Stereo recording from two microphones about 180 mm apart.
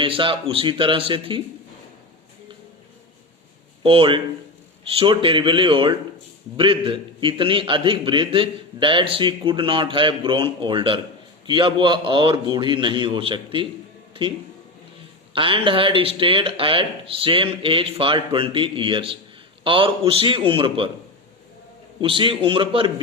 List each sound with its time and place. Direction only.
0.0 s a man's voice: 30° right (ahead or behind)
3.8 s a man's voice: 30° right (ahead or behind)
14.1 s a sound: 30° right (ahead or behind)
15.4 s a man's voice: 30° right (ahead or behind)
22.0 s a man's voice: 30° right (ahead or behind)